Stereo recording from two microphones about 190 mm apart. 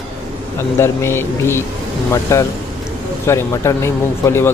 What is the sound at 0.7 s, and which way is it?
Speech, 15° left (ahead or behind).